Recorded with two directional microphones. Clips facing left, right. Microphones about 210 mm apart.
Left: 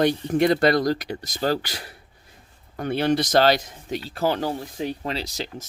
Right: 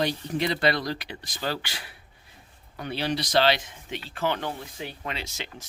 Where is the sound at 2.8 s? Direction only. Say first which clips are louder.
Left 7 dB; 50° left (ahead or behind).